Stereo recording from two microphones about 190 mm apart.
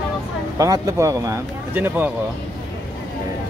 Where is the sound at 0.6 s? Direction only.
15° right (ahead or behind).